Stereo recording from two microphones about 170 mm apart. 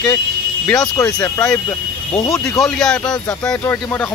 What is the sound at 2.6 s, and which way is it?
Speech, 5° left (ahead or behind).